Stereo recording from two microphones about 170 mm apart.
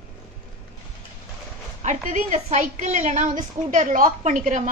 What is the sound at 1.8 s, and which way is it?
A woman's voice, 45° right (ahead or behind).